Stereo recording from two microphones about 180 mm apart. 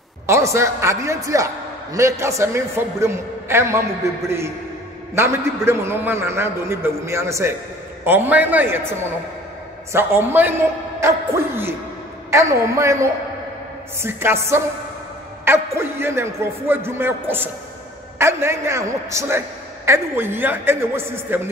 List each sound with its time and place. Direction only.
0.3 s a man's voice: 15° right (ahead or behind)